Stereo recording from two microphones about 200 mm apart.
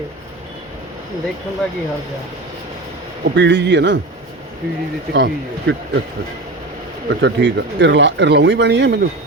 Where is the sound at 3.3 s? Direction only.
60° right (ahead or behind).